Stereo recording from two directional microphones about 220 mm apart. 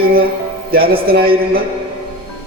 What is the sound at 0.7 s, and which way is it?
Speech, 45° right (ahead or behind).